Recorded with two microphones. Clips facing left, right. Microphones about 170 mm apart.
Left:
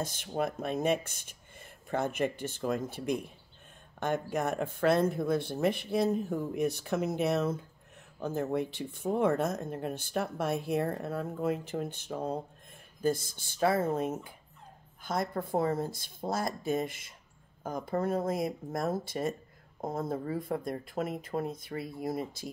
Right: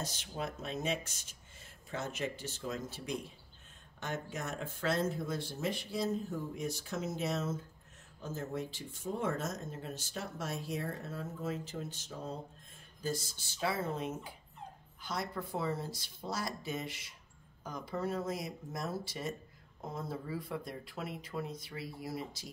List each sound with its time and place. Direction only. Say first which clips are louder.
0.0 s speech: left 7 dB; 55° left (ahead or behind)